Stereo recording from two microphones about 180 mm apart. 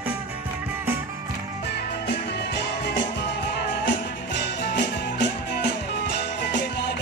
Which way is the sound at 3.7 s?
80° left.